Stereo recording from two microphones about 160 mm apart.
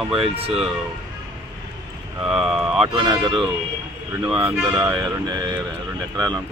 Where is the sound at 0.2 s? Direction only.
35° right (ahead or behind).